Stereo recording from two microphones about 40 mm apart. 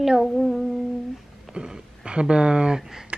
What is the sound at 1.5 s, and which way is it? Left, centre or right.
A child's voice, right.